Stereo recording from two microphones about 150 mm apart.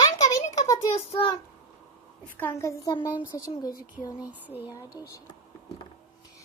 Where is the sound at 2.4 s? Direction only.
15° left (ahead or behind).